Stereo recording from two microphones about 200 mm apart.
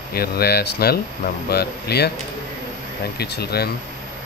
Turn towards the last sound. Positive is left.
turn(degrees=55)  # may be behind; listen again after turning